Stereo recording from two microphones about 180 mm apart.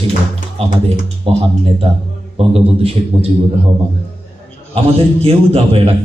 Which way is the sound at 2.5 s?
35° right (ahead or behind).